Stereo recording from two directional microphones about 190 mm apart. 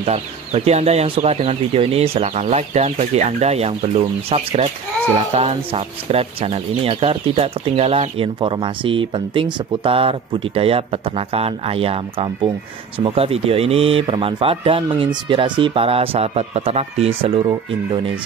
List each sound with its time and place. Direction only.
0.0 s speech: 35° right (ahead or behind)